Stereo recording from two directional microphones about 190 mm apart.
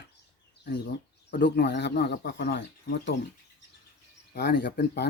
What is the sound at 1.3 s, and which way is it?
Speech, 60° left (ahead or behind).